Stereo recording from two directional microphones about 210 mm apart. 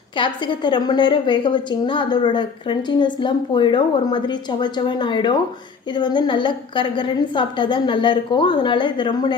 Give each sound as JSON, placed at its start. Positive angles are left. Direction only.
{"t": 0.2, "sound": "a woman's voice", "side_deg": 20}